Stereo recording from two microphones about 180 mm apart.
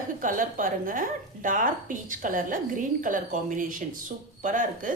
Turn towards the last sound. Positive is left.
turn(degrees=-45)  # may be behind; listen again after turning